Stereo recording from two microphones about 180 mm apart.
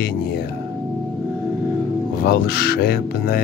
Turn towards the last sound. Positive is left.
turn(degrees=55)  # may be behind; listen again after turning